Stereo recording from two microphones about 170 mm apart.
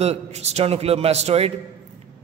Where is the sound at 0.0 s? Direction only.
40° right (ahead or behind).